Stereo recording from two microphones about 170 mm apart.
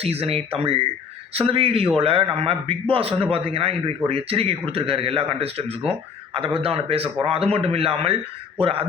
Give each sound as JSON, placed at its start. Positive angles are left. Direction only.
{"t": 0.0, "sound": "a man's voice", "side_deg": -35}